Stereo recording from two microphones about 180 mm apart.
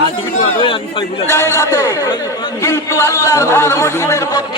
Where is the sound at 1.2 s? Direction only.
15° left (ahead or behind).